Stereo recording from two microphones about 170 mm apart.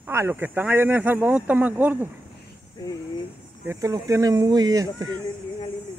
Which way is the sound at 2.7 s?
20° left (ahead or behind).